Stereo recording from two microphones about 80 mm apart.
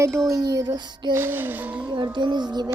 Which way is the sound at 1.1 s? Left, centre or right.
Right.